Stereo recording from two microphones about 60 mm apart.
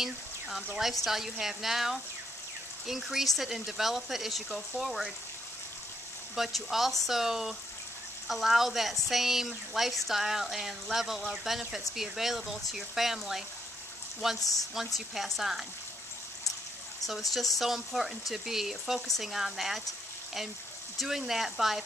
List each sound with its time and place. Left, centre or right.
0.0 s frying: centre
0.7 s speech: centre
6.3 s speech: centre
14.4 s speech: left
15.0 s speech: centre
17.0 s speech: centre
21.0 s speech: centre